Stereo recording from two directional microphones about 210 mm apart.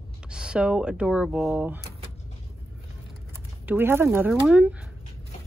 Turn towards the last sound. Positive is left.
turn(degrees=-5)  # may be behind; listen again after turning